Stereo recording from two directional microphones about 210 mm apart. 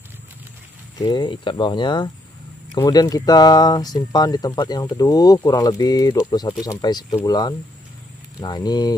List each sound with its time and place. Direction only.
0.9 s speech: 20° left (ahead or behind)